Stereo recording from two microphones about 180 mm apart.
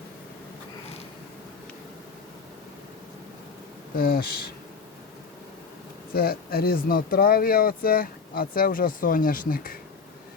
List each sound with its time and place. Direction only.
3.9 s speech: 55° left (ahead or behind)
6.1 s speech: 55° left (ahead or behind)